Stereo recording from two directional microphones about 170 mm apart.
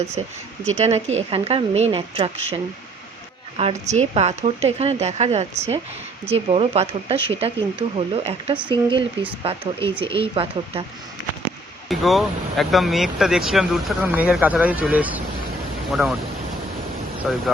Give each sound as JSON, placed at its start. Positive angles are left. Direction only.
{"t": 0.2, "sound": "speech", "side_deg": -30}
{"t": 3.6, "sound": "a woman's voice", "side_deg": -40}
{"t": 11.9, "sound": "speech", "side_deg": 0}
{"t": 17.3, "sound": "speech", "side_deg": -10}